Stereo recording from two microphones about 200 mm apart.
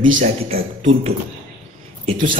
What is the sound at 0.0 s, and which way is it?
A man's voice, 30° right (ahead or behind).